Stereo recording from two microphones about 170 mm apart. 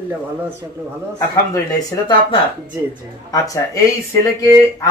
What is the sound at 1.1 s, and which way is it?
Speech, 20° left (ahead or behind).